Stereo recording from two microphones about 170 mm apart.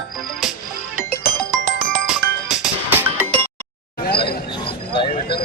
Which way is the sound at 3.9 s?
70° left (ahead or behind).